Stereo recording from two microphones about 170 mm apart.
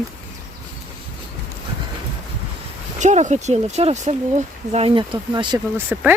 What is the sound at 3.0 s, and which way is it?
Speech, 45° right (ahead or behind).